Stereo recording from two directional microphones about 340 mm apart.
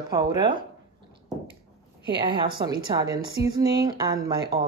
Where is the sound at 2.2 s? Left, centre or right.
Centre.